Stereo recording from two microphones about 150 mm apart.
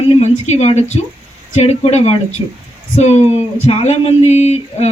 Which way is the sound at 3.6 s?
45° left (ahead or behind).